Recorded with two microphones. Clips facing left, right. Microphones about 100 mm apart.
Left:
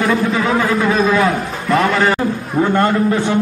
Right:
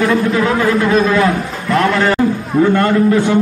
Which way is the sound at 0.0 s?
Centre (ahead or behind).